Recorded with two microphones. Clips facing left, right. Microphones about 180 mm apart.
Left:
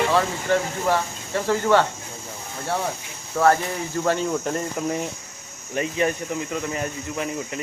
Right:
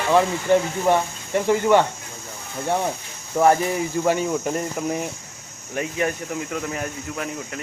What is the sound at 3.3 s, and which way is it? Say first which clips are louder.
Speech: right 2 dB; 15° right (ahead or behind).